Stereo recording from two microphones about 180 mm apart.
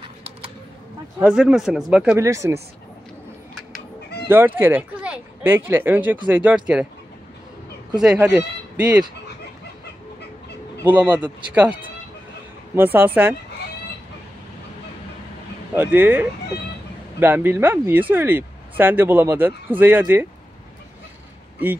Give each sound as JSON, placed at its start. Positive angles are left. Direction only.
{"t": 1.2, "sound": "speech", "side_deg": -5}
{"t": 2.2, "sound": "speech", "side_deg": -15}
{"t": 4.3, "sound": "speech", "side_deg": -10}
{"t": 8.0, "sound": "speech", "side_deg": -5}
{"t": 10.8, "sound": "speech", "side_deg": -10}
{"t": 12.7, "sound": "speech", "side_deg": -10}
{"t": 15.7, "sound": "speech", "side_deg": -10}